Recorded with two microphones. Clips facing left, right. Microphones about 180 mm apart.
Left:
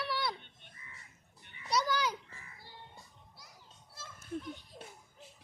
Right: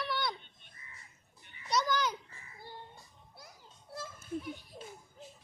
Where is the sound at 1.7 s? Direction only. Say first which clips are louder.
Right 1 dB; 10° left (ahead or behind).